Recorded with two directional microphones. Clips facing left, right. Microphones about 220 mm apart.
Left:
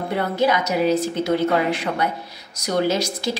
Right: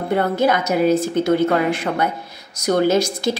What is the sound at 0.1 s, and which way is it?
Speech, 50° right (ahead or behind).